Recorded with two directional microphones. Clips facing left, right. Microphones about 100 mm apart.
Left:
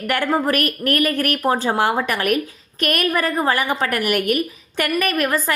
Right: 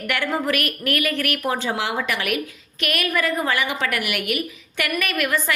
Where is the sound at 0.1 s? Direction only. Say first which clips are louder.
Left 4 dB; 40° left (ahead or behind).